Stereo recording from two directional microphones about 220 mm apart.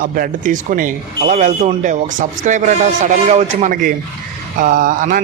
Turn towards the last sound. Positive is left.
turn(degrees=-35)  # may be behind; listen again after turning